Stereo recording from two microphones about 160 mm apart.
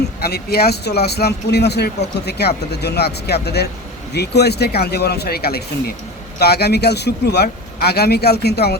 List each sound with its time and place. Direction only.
0.2 s speech: 80° left
6.4 s speech: 90° left